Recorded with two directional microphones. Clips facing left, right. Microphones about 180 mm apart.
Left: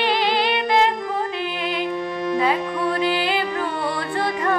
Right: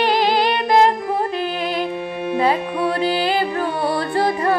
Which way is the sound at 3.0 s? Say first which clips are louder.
Right 2 dB; 40° right (ahead or behind).